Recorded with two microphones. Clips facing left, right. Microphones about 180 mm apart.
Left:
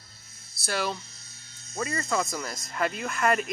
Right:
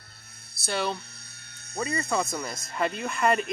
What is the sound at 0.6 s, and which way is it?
Hum, centre (ahead or behind).